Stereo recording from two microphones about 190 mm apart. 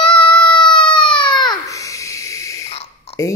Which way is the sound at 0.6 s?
25° left (ahead or behind).